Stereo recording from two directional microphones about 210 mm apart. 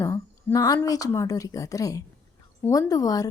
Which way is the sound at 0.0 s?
15° left (ahead or behind).